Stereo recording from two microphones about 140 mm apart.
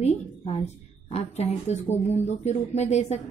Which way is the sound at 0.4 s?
45° left (ahead or behind).